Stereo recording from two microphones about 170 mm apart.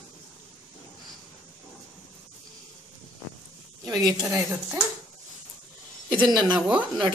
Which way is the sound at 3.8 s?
25° right (ahead or behind).